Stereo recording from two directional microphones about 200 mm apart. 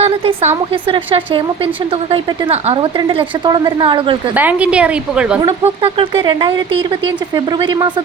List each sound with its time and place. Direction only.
0.0 s a woman's voice: 30° right (ahead or behind)
4.4 s a woman's voice: 5° right (ahead or behind)
5.4 s a woman's voice: 30° right (ahead or behind)